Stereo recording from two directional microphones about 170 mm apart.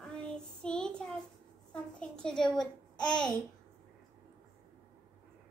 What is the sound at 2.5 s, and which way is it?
Speech, 25° left (ahead or behind).